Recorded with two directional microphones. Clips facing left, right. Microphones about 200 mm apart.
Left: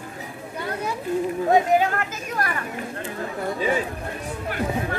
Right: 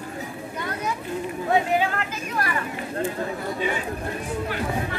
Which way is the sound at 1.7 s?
45° left (ahead or behind).